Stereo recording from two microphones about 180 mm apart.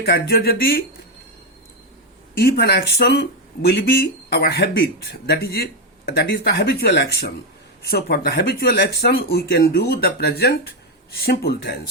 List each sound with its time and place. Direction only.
0.0 s speech: 60° left (ahead or behind)
2.4 s speech: 60° left (ahead or behind)